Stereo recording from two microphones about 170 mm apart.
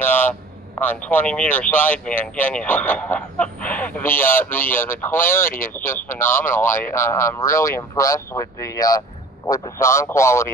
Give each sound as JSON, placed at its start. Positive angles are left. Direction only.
{"t": 0.0, "sound": "speech", "side_deg": 10}